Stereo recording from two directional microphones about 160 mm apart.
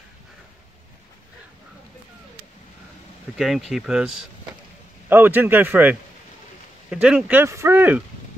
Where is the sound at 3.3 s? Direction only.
Centre (ahead or behind).